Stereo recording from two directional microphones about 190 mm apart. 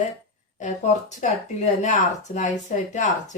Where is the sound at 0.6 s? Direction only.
40° left (ahead or behind).